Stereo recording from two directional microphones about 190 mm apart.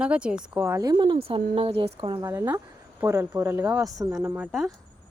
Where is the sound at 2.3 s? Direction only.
15° right (ahead or behind).